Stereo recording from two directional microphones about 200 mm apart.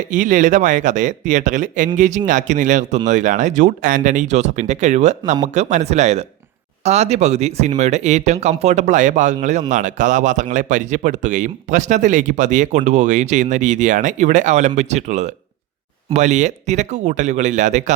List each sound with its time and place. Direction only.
0.1 s speech: 40° right (ahead or behind)